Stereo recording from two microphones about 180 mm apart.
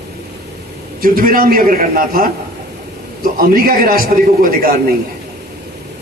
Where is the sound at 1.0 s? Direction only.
55° right (ahead or behind).